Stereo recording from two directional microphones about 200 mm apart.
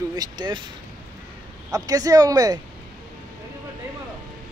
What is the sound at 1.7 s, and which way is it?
Speech, 20° right (ahead or behind).